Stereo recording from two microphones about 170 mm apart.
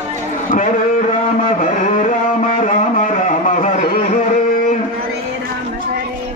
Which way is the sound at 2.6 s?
45° left (ahead or behind).